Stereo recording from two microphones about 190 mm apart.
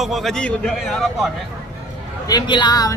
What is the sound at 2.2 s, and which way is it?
Speech, 20° left (ahead or behind).